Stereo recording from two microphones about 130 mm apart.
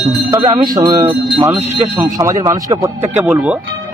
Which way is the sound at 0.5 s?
30° right (ahead or behind).